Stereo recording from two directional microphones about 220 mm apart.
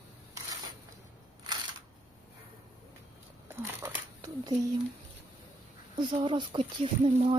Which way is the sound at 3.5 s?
10° right (ahead or behind).